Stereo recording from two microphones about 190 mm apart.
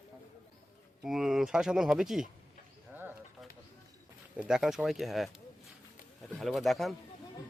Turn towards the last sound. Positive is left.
turn(degrees=0)  # may be behind; listen again after turning